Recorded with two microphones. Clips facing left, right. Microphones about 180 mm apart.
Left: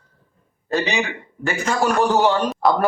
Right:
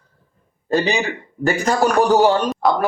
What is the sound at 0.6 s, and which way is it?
A man's voice, 35° right (ahead or behind).